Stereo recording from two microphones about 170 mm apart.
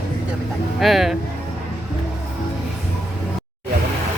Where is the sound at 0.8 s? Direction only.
Centre (ahead or behind).